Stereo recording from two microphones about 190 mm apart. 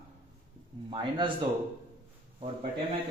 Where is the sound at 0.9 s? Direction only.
25° right (ahead or behind).